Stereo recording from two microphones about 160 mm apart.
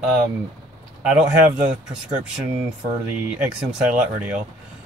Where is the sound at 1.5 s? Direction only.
10° right (ahead or behind).